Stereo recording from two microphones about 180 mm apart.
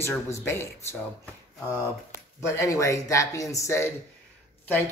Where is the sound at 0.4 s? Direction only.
15° left (ahead or behind).